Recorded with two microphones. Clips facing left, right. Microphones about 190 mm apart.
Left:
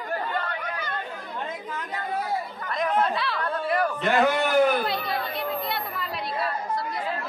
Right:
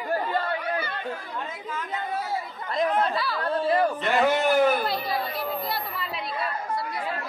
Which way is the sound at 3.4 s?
30° right (ahead or behind).